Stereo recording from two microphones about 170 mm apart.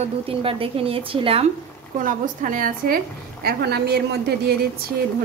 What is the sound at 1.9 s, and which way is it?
A woman's voice, 50° right (ahead or behind).